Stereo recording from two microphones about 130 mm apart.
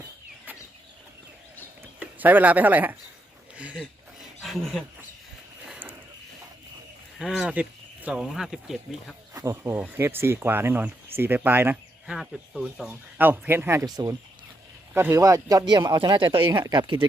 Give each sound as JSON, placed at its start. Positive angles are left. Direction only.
{"t": 1.8, "sound": "speech", "side_deg": -15}
{"t": 3.5, "sound": "a sound", "side_deg": -10}
{"t": 7.2, "sound": "speech", "side_deg": -5}
{"t": 9.3, "sound": "speech", "side_deg": -25}
{"t": 12.9, "sound": "speech", "side_deg": -15}
{"t": 14.9, "sound": "speech", "side_deg": -20}